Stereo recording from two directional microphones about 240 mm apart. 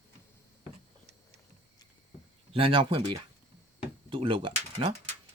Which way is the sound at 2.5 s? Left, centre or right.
Right.